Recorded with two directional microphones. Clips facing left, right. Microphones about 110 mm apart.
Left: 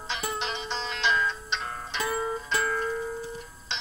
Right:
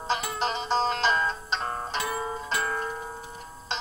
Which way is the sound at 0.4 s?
40° right (ahead or behind).